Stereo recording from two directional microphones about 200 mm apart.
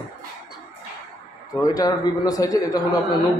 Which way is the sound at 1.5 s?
20° left (ahead or behind).